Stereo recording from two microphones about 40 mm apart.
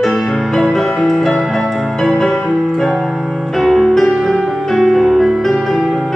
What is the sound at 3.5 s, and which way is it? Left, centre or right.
Music, centre.